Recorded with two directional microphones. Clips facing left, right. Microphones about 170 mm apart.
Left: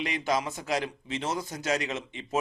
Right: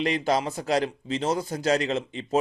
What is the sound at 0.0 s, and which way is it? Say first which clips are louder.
Speech: right 5 dB; 35° right (ahead or behind).